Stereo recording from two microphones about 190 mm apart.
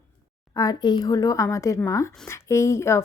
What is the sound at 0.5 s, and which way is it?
A woman's voice, 20° left (ahead or behind).